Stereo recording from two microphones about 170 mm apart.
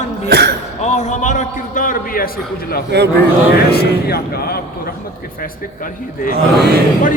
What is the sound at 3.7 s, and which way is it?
Speech, 65° left (ahead or behind).